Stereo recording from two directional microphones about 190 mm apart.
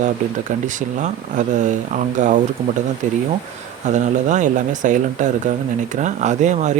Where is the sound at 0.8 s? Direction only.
40° right (ahead or behind).